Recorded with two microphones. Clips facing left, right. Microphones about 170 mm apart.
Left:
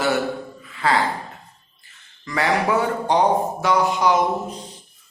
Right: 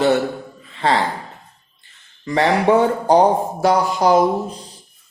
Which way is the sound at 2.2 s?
30° right (ahead or behind).